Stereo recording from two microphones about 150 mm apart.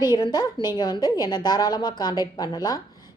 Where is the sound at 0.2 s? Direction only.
30° left (ahead or behind).